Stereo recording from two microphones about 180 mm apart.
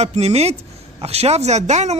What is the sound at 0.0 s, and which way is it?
Speech, 35° right (ahead or behind).